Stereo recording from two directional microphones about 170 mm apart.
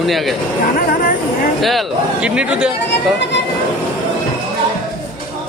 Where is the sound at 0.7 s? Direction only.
55° left (ahead or behind).